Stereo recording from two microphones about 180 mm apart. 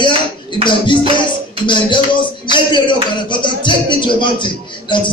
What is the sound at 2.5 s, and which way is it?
Speech, 25° left (ahead or behind).